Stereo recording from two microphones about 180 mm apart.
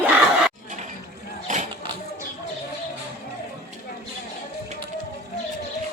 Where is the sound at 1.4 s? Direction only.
40° right (ahead or behind).